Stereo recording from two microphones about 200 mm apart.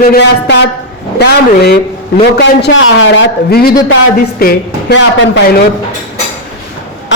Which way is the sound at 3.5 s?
50° left (ahead or behind).